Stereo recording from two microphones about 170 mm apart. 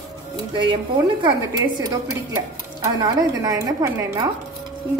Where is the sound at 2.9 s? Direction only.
20° right (ahead or behind).